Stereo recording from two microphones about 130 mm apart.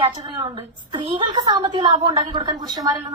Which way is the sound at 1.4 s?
30° right (ahead or behind).